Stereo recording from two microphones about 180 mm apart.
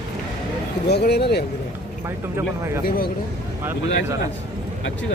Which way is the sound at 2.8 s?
55° left (ahead or behind).